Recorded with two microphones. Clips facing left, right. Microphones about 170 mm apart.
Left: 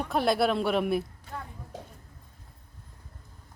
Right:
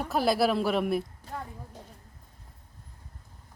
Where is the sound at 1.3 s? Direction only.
35° right (ahead or behind).